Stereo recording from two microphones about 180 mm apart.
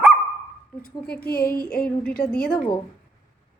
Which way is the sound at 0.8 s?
55° left (ahead or behind).